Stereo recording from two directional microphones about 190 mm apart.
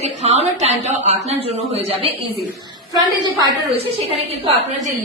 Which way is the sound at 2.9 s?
20° right (ahead or behind).